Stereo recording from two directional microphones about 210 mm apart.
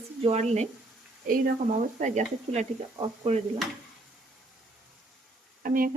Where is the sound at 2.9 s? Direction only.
20° right (ahead or behind).